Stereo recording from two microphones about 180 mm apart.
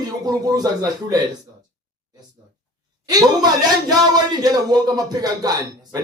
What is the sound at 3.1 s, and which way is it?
Speech, 20° right (ahead or behind).